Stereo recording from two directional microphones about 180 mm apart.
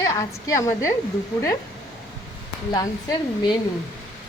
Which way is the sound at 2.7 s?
20° left (ahead or behind).